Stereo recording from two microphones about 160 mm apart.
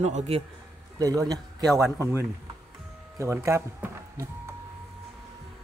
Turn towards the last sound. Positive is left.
turn(degrees=-15)  # may be behind; listen again after turning